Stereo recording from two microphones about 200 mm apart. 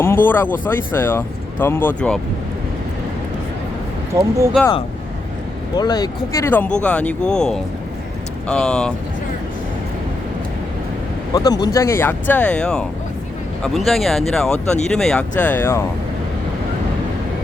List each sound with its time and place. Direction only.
0.3 s speech: 10° left (ahead or behind)
4.1 s speech: 15° right (ahead or behind)
5.7 s speech: 20° left (ahead or behind); by 8.9 s 5° left (ahead or behind)
11.3 s speech: 20° left (ahead or behind)